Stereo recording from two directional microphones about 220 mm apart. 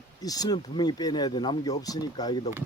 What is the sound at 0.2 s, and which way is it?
Speech, 15° left (ahead or behind).